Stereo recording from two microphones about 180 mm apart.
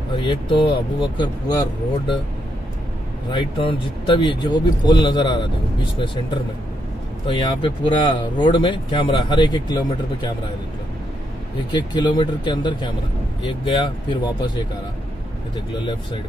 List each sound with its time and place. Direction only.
0.1 s speech: 25° left (ahead or behind)
3.3 s speech: 25° left (ahead or behind)
11.7 s speech: 25° left (ahead or behind)